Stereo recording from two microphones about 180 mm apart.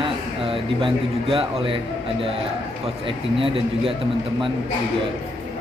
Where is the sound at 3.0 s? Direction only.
30° right (ahead or behind).